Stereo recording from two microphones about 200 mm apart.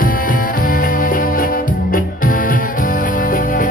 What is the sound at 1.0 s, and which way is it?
Music, 45° left (ahead or behind).